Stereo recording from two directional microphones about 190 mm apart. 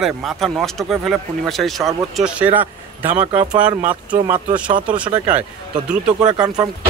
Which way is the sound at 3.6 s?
10° right (ahead or behind).